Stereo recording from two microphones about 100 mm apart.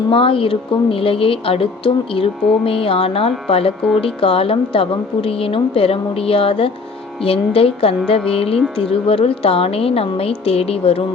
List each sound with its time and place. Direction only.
0.1 s a woman's voice: 65° left (ahead or behind); by 10.9 s 80° left